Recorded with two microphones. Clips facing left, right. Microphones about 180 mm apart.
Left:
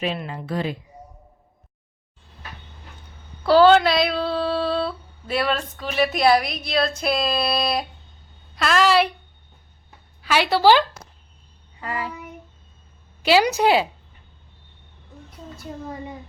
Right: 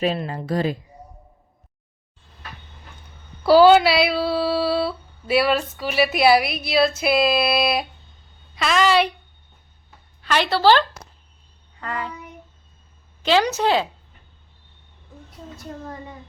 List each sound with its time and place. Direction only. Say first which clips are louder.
0.0 s a woman's voice: right 4 dB; 40° right (ahead or behind)
3.4 s humming: right 2 dB; 10° right (ahead or behind)
8.5 s a woman's voice: even; centre (ahead or behind)
10.2 s a woman's voice: left 1 dB; 10° left (ahead or behind)
11.8 s child singing: even; 5° left (ahead or behind)
13.2 s a woman's voice: left 1 dB; 10° left (ahead or behind)